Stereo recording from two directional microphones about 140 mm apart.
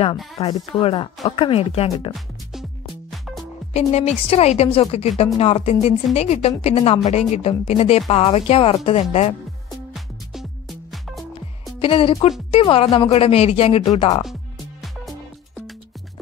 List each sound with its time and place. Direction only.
0.5 s speech: 40° left (ahead or behind)
2.1 s music: centre (ahead or behind)
3.7 s speech: 50° left (ahead or behind)
9.7 s music: centre (ahead or behind)
11.8 s speech: 40° left (ahead or behind)
13.8 s speech: 35° left (ahead or behind)